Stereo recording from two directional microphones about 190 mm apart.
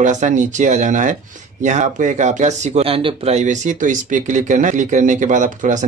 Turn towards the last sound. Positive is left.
turn(degrees=-40)  # may be behind; listen again after turning